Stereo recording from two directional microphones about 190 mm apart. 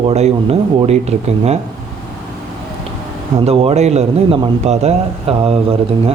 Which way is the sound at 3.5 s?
30° right (ahead or behind).